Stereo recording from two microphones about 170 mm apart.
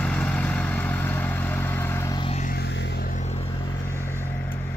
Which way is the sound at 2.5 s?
80° left.